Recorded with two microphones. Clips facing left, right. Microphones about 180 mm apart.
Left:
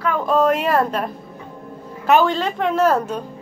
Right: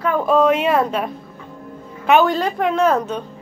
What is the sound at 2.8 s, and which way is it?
Speech, 5° left (ahead or behind).